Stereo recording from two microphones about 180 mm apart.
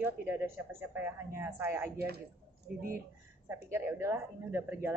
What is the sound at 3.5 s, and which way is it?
Speech, 15° right (ahead or behind).